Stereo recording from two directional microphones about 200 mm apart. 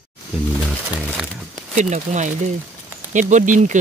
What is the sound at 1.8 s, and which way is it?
Speech, 35° right (ahead or behind).